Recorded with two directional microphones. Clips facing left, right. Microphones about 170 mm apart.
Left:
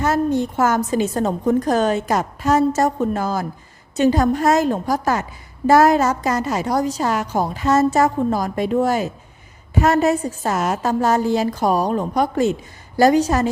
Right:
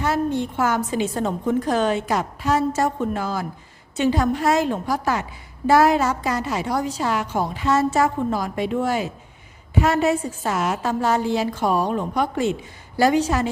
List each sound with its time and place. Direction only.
0.0 s a woman's voice: 45° left (ahead or behind)